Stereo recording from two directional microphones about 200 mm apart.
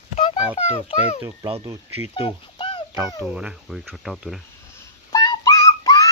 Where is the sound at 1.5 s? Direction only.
25° right (ahead or behind).